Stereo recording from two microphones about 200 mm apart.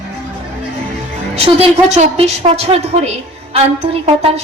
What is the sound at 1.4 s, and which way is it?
A woman's voice, 30° right (ahead or behind).